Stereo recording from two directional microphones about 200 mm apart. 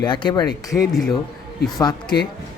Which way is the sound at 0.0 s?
20° left (ahead or behind).